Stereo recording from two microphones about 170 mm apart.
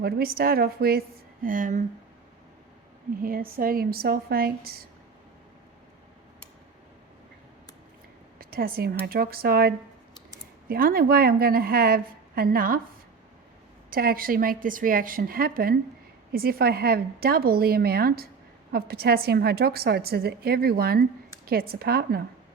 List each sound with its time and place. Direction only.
0.0 s a woman's voice: 60° right (ahead or behind)
3.2 s a woman's voice: 55° right (ahead or behind)
8.4 s a sound: 60° right (ahead or behind)
9.0 s a woman's voice: 60° right (ahead or behind)
13.9 s a woman's voice: 60° right (ahead or behind)